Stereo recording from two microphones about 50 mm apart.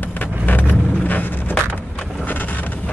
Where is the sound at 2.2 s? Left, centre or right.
Left.